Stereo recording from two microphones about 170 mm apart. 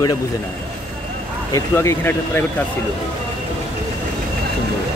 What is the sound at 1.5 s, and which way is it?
Speech, 15° left (ahead or behind).